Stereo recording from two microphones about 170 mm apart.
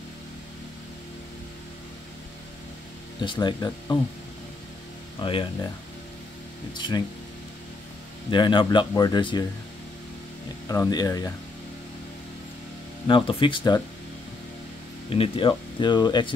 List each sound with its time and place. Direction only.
3.2 s speech: 25° left (ahead or behind)
5.2 s speech: 30° left (ahead or behind)
6.7 s speech: 25° left (ahead or behind)
8.3 s speech: 30° left (ahead or behind)
10.7 s speech: 20° left (ahead or behind)
13.1 s speech: 30° left (ahead or behind)
15.0 s speech: 30° left (ahead or behind)